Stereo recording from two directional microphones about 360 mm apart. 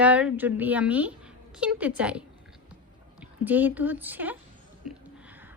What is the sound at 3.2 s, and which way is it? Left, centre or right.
A woman's voice, centre.